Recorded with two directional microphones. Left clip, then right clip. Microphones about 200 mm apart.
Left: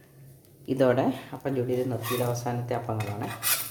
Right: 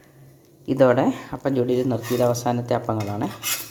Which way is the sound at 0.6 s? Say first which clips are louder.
Right 6 dB; 15° right (ahead or behind).